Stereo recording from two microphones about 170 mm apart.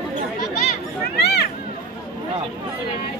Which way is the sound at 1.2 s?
75° left (ahead or behind).